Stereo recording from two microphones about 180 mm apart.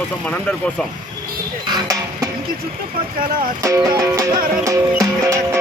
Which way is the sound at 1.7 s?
20° right (ahead or behind).